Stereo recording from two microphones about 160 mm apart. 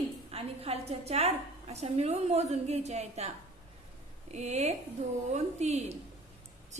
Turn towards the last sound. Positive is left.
turn(degrees=-45)  # may be behind; listen again after turning